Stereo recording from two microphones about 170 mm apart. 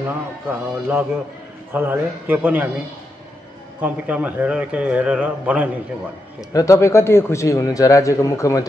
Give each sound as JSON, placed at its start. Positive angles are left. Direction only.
{"t": 0.1, "sound": "a man's voice", "side_deg": -10}
{"t": 3.8, "sound": "a man's voice", "side_deg": -10}
{"t": 6.5, "sound": "a man's voice", "side_deg": 20}